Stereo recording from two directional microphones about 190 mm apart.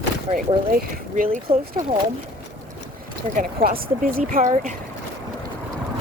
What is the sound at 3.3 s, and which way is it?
Speech, 45° right (ahead or behind).